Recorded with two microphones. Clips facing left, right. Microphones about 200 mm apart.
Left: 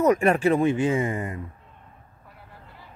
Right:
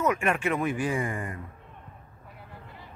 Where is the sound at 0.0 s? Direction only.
35° left (ahead or behind).